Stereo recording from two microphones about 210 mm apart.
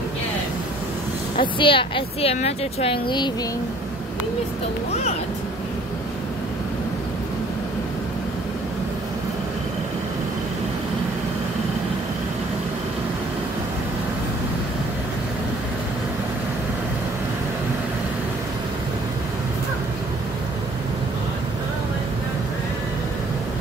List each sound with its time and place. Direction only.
1.3 s speech: 25° left (ahead or behind)